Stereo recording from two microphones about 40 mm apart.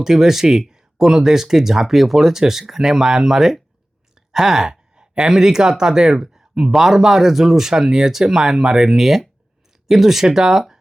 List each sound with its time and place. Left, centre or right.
0.0 s speech: centre
4.3 s sigh: centre
5.3 s speech: centre